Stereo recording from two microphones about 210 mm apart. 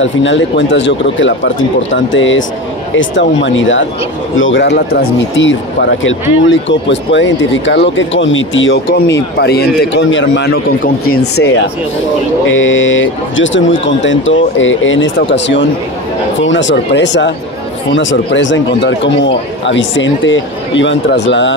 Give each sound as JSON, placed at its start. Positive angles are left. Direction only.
{"t": 0.0, "sound": "speech", "side_deg": 60}
{"t": 12.4, "sound": "speech", "side_deg": 65}